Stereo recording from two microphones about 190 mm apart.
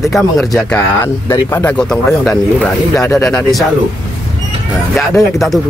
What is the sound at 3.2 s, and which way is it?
Speech, centre (ahead or behind).